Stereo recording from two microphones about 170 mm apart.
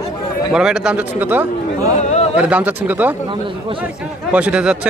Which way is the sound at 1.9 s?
40° left (ahead or behind).